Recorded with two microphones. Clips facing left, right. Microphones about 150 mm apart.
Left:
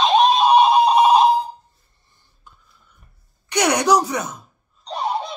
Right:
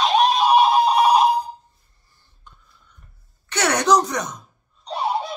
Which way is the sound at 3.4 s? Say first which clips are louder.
Left 2 dB; 15° left (ahead or behind).